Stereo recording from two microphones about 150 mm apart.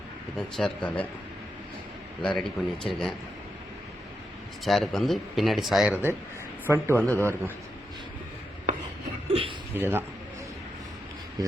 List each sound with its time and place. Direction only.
0.3 s speech: 5° left (ahead or behind)
2.4 s speech: centre (ahead or behind)
4.6 s speech: centre (ahead or behind); by 7.0 s 15° right (ahead or behind)
7.0 s speech: 10° left (ahead or behind)
9.3 s a sound: 35° right (ahead or behind)
9.7 s speech: 15° right (ahead or behind)